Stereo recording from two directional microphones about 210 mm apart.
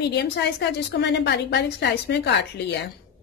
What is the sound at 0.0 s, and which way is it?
A woman's voice, 50° left (ahead or behind).